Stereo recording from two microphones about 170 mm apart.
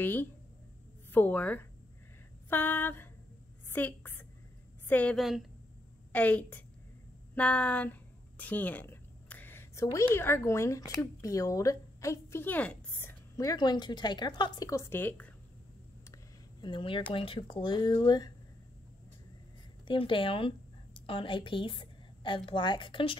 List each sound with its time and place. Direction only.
0.0 s speech: 10° left (ahead or behind)
1.1 s a sound: 10° left (ahead or behind)
4.8 s a woman's voice: 10° left (ahead or behind)
6.1 s a sound: 10° left (ahead or behind)
7.3 s a woman's voice: 5° left (ahead or behind)
13.4 s a woman's voice: 20° left (ahead or behind)
16.6 s a woman's voice: 30° left (ahead or behind)
19.9 s a woman's voice: 30° left (ahead or behind)